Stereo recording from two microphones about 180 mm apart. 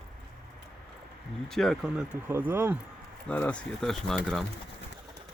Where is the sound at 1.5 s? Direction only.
Centre (ahead or behind).